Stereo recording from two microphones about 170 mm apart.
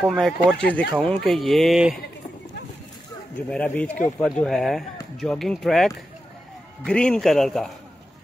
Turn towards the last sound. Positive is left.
turn(degrees=0)  # may be behind; listen again after turning